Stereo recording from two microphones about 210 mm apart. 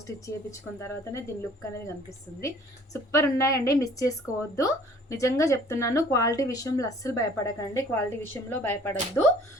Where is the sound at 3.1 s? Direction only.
15° left (ahead or behind).